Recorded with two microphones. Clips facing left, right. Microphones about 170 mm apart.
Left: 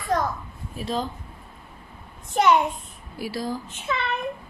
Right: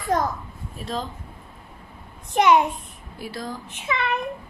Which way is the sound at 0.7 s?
Centre (ahead or behind).